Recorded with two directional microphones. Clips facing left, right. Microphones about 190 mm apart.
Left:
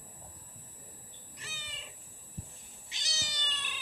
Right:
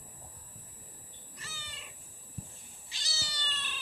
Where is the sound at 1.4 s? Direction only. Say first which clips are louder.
Left 1 dB; 20° left (ahead or behind).